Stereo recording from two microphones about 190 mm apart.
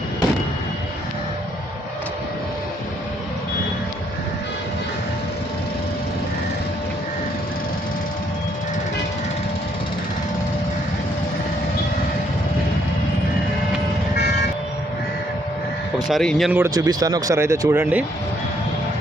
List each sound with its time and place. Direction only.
16.0 s speech: centre (ahead or behind)
16.5 s speech: 15° right (ahead or behind)